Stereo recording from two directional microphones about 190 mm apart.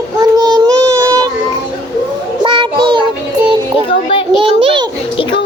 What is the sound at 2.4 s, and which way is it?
Child singing, 25° right (ahead or behind).